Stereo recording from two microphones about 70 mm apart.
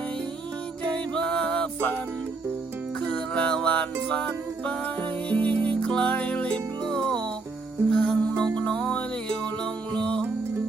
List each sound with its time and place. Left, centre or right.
0.9 s music: centre
3.0 s music: centre